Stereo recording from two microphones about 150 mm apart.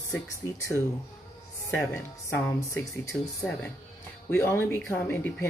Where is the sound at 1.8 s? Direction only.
20° left (ahead or behind).